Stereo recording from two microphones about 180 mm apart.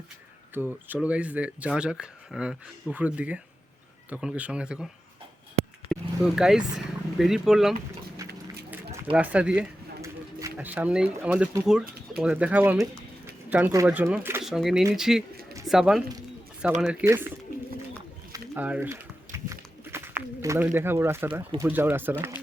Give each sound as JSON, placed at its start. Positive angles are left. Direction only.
{"t": 0.5, "sound": "speech", "side_deg": -10}
{"t": 5.9, "sound": "speech", "side_deg": 0}
{"t": 8.2, "sound": "a sound", "side_deg": -20}
{"t": 9.1, "sound": "speech", "side_deg": -5}
{"t": 10.0, "sound": "a sound", "side_deg": -15}
{"t": 11.6, "sound": "speech", "side_deg": -5}
{"t": 18.3, "sound": "a sound", "side_deg": -20}
{"t": 18.6, "sound": "bird", "side_deg": -10}
{"t": 21.6, "sound": "speech", "side_deg": -10}